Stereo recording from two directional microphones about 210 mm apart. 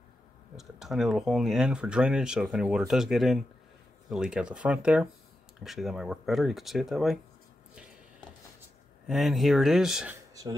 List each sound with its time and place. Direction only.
0.6 s speech: centre (ahead or behind)
9.0 s speech: centre (ahead or behind)